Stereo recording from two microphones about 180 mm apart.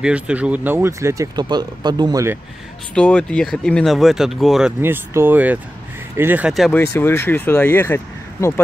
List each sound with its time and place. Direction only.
0.0 s speech: 5° right (ahead or behind)
2.9 s speech: 5° left (ahead or behind)
7.0 s speech: 15° left (ahead or behind)